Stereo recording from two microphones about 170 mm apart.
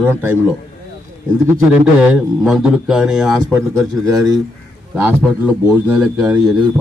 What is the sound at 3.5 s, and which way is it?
Speech, 15° right (ahead or behind).